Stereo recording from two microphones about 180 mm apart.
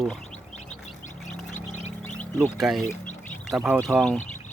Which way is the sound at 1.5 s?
45° left (ahead or behind).